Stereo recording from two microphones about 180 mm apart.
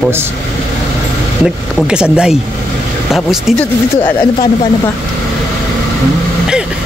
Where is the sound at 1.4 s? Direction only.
5° right (ahead or behind).